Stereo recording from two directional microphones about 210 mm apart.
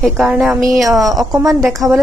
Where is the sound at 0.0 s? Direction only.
Centre (ahead or behind).